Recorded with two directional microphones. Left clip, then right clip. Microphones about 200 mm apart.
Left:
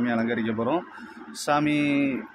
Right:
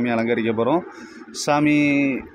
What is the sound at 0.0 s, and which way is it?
A man's voice, 20° right (ahead or behind).